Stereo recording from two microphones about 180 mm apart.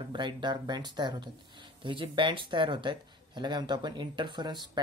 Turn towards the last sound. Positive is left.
turn(degrees=-25)  # may be behind; listen again after turning